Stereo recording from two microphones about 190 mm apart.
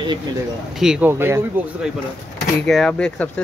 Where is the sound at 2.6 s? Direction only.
5° left (ahead or behind).